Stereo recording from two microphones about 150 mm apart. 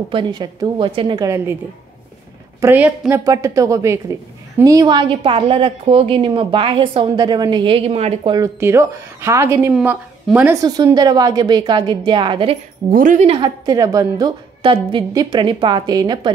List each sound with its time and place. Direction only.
0.1 s a woman's voice: 30° right (ahead or behind)
2.6 s a woman's voice: 10° right (ahead or behind)
3.3 s a woman's voice: 20° right (ahead or behind); by 8.3 s 45° right (ahead or behind)
8.5 s a woman's voice: 15° right (ahead or behind)
9.8 s a woman's voice: 5° right (ahead or behind)
10.5 s a woman's voice: 20° right (ahead or behind)
12.9 s a woman's voice: 60° right (ahead or behind)
13.3 s a woman's voice: 30° right (ahead or behind)
14.6 s a woman's voice: 35° right (ahead or behind)